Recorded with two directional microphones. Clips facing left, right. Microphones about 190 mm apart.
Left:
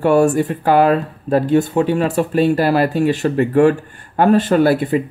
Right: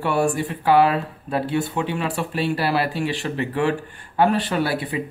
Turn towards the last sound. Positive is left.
turn(degrees=45)  # may be behind; listen again after turning